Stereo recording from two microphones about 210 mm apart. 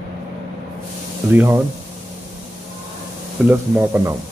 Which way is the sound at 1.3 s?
10° right (ahead or behind).